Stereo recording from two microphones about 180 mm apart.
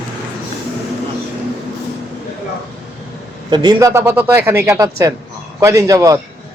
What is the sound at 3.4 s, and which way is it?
A man's voice, 25° right (ahead or behind).